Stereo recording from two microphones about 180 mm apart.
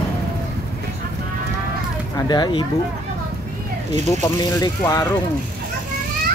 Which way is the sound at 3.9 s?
20° left (ahead or behind).